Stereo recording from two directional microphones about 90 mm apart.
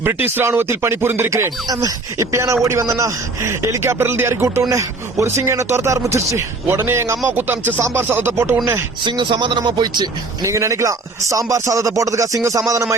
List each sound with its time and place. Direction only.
0.0 s speech: 25° right (ahead or behind)
9.0 s a man's voice: 60° right (ahead or behind)
10.4 s speech: 35° right (ahead or behind)